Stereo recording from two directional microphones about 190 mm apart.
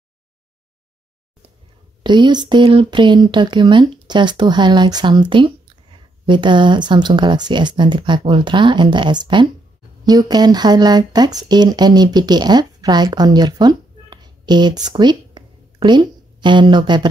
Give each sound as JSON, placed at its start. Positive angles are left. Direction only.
{"t": 2.0, "sound": "speech", "side_deg": -25}